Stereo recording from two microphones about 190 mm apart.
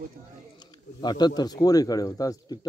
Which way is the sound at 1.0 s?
20° left (ahead or behind).